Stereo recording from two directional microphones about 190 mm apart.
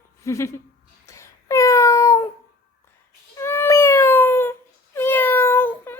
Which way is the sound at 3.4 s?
15° left (ahead or behind).